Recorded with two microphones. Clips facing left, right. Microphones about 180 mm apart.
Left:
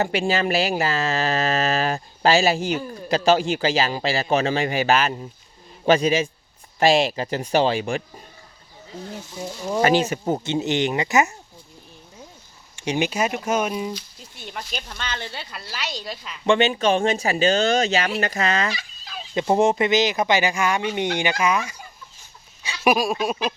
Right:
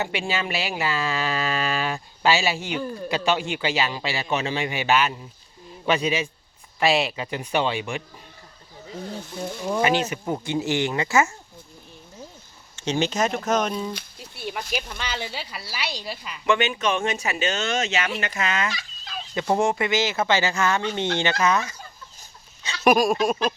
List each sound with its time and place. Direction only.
0.0 s a man's voice: 40° left (ahead or behind)
10.3 s speech: 25° left (ahead or behind)
12.7 s speech: 15° left (ahead or behind)
14.3 s a woman's voice: 10° right (ahead or behind)
16.5 s speech: 30° left (ahead or behind)
18.7 s fowl: centre (ahead or behind)
19.3 s speech: 20° left (ahead or behind); by 23.6 s 5° left (ahead or behind)